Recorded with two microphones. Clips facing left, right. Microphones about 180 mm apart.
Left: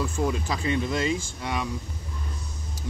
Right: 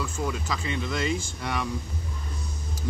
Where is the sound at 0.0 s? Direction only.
35° left (ahead or behind).